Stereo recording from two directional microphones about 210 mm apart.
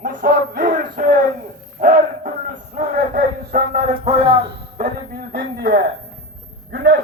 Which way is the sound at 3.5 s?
35° right (ahead or behind).